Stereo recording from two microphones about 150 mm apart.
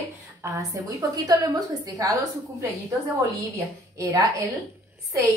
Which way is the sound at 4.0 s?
20° right (ahead or behind).